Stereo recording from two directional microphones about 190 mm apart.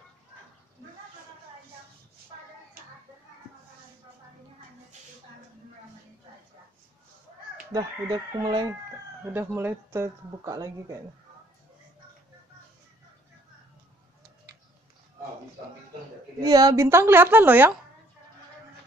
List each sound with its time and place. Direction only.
7.7 s chicken: 20° right (ahead or behind)
9.3 s speech: 10° right (ahead or behind)
16.4 s speech: 20° right (ahead or behind)